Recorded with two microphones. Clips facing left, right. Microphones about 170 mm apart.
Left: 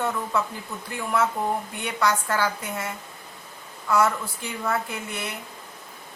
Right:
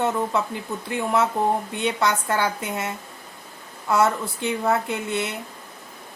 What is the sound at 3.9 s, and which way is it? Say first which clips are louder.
A woman's voice: right 2 dB; 25° right (ahead or behind).